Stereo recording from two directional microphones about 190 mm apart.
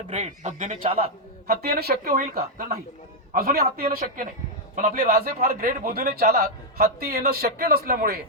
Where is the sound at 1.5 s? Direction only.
55° right (ahead or behind).